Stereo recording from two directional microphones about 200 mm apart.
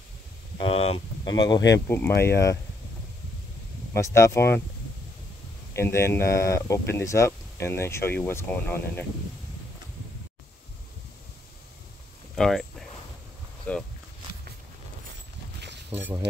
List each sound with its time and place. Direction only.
0.7 s speech: 30° left (ahead or behind)
3.9 s speech: 15° left (ahead or behind)
5.7 s speech: 10° left (ahead or behind)
12.4 s a sound: centre (ahead or behind)